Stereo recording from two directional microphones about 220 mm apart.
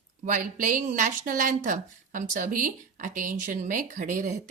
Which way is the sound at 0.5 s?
35° right (ahead or behind).